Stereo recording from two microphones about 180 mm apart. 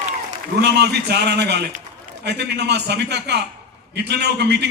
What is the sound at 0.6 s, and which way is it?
A man's voice, 65° right (ahead or behind).